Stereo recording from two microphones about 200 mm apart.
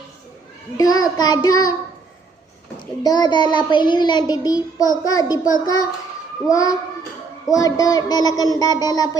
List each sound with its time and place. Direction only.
0.8 s child singing: 20° left (ahead or behind)
3.0 s child singing: 20° left (ahead or behind)
6.5 s a child's voice: 15° left (ahead or behind)
7.5 s child singing: 20° left (ahead or behind)